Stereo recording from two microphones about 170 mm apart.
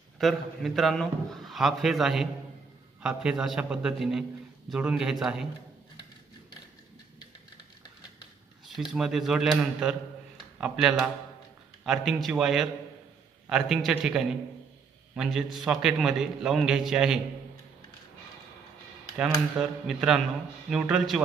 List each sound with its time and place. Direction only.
0.2 s a man's voice: centre (ahead or behind)
8.6 s a man's voice: centre (ahead or behind)
19.5 s a man's voice: 5° right (ahead or behind)